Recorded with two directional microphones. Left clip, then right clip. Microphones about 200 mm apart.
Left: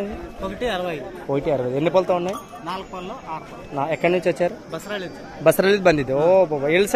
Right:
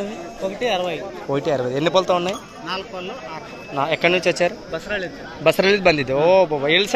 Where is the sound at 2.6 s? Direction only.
50° left (ahead or behind).